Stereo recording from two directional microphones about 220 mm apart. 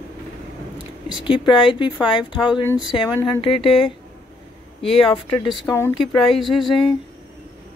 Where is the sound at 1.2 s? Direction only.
20° left (ahead or behind).